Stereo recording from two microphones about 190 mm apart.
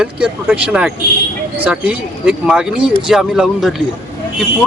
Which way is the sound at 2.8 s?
25° right (ahead or behind).